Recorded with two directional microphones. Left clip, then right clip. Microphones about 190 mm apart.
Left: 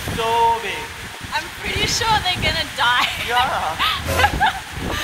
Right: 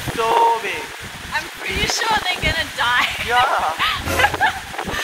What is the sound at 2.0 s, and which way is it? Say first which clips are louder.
Speech: left 2 dB; 20° left (ahead or behind).